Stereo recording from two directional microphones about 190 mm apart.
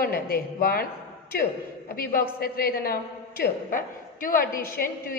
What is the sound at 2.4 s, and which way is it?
A woman's voice, 55° left (ahead or behind).